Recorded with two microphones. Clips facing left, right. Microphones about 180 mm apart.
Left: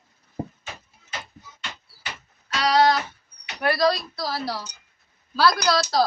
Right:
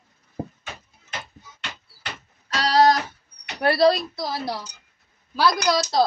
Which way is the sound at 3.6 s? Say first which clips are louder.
Right 4 dB; 30° right (ahead or behind).